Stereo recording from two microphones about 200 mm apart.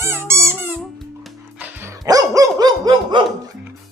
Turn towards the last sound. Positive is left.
turn(degrees=-20)  # may be behind; listen again after turning